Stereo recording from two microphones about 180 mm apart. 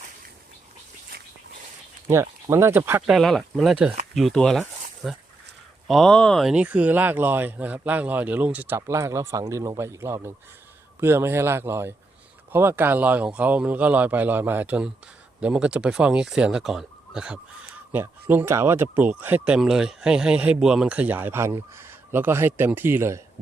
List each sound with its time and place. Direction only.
2.5 s speech: 15° right (ahead or behind)
3.1 s speech: centre (ahead or behind)
5.9 s speech: 5° left (ahead or behind); by 23.2 s 15° right (ahead or behind)